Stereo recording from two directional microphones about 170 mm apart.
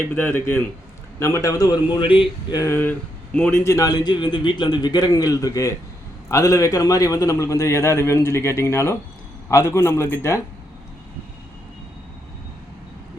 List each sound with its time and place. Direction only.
0.1 s a man's voice: 10° left (ahead or behind)
3.6 s a man's voice: 20° left (ahead or behind)